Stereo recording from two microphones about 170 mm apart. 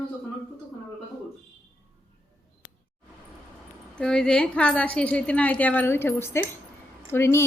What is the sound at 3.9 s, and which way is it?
Speech, 5° left (ahead or behind).